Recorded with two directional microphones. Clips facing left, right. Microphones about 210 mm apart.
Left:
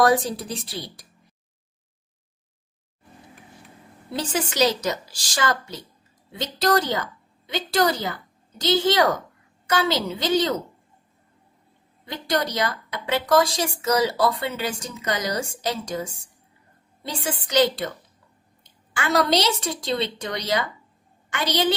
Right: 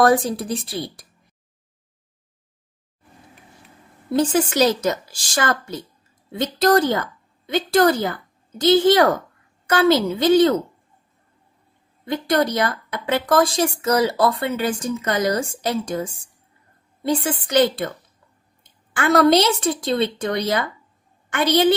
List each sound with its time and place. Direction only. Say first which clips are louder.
0.0 s a woman's voice: right 3 dB; 55° right (ahead or behind)
4.1 s a woman's voice: right 8 dB; 50° right (ahead or behind)
12.0 s a woman's voice: right 6 dB; 55° right (ahead or behind)